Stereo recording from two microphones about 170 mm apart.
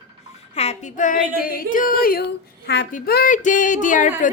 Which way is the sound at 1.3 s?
60° left (ahead or behind).